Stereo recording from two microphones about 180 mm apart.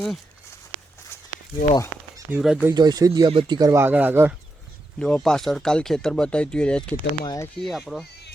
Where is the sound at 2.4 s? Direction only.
5° right (ahead or behind).